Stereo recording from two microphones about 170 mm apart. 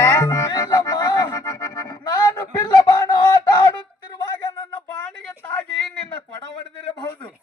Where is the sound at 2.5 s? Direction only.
25° left (ahead or behind).